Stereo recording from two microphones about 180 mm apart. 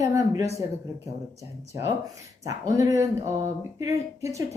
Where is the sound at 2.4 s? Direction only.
20° right (ahead or behind).